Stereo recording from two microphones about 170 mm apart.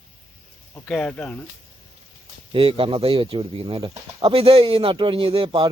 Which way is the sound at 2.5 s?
30° right (ahead or behind).